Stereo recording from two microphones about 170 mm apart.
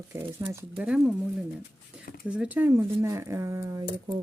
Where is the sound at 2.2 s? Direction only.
10° right (ahead or behind).